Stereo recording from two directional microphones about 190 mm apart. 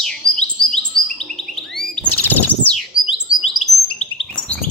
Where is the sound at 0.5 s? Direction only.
25° left (ahead or behind).